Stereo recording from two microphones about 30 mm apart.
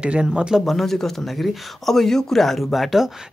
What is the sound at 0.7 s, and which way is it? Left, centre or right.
Speech, centre.